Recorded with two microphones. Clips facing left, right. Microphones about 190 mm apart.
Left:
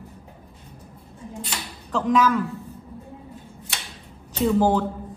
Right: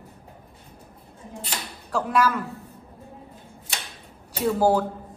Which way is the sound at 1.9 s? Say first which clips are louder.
Left 3 dB; 10° right (ahead or behind).